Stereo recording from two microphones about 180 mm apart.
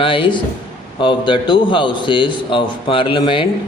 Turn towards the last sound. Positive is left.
turn(degrees=30)  # may be behind; listen again after turning